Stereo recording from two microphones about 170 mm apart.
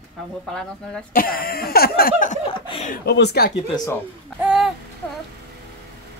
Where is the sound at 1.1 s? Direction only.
60° left (ahead or behind).